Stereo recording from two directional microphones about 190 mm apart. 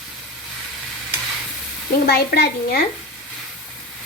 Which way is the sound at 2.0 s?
55° left (ahead or behind).